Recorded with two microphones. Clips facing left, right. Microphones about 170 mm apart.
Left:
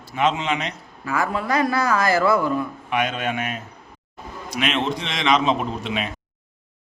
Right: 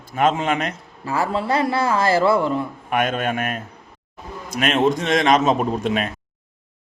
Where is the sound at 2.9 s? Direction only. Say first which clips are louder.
Right 4 dB; 50° right (ahead or behind).